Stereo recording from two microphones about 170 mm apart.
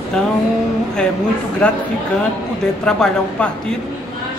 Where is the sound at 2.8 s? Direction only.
5° left (ahead or behind).